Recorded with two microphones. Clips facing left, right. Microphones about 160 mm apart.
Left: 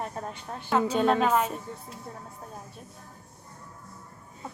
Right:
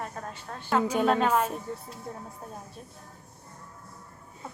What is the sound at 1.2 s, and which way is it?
Speech, 10° left (ahead or behind).